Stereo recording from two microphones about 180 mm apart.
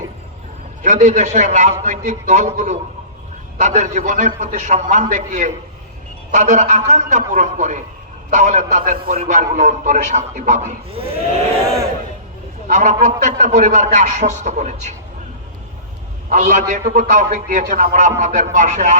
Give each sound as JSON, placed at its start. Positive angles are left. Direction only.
{"t": 0.8, "sound": "a man's voice", "side_deg": -45}
{"t": 12.6, "sound": "a man's voice", "side_deg": -45}
{"t": 16.3, "sound": "a man's voice", "side_deg": -45}